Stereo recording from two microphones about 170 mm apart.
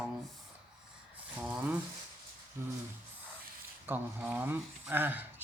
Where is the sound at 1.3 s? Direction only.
10° right (ahead or behind).